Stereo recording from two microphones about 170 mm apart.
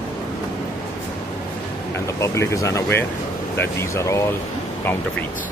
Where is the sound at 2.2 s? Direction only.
15° left (ahead or behind).